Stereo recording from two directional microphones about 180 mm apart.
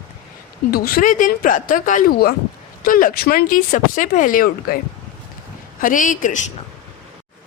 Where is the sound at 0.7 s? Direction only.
55° left (ahead or behind).